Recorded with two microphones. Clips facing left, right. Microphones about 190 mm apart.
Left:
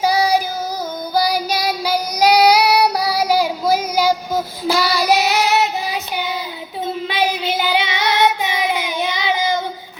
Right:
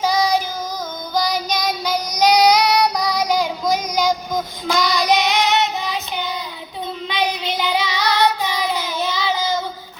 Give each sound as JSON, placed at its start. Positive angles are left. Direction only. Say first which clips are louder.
{"t": 0.0, "sound": "child singing", "louder": "left 2 dB", "side_deg": 10}
{"t": 7.8, "sound": "child singing", "louder": "even", "side_deg": 25}